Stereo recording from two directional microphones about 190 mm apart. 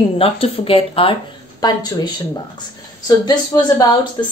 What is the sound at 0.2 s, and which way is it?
A woman's voice, 30° left (ahead or behind).